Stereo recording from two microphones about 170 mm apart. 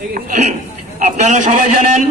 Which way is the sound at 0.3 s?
45° right (ahead or behind).